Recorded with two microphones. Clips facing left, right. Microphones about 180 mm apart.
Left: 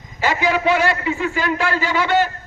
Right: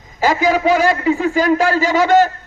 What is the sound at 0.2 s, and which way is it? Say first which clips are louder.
A man's voice: right 4 dB; 40° right (ahead or behind).